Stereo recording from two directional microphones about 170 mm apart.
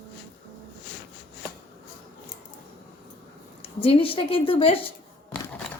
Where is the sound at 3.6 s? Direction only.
35° left (ahead or behind).